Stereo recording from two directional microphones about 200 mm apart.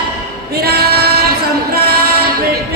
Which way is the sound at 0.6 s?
50° right (ahead or behind).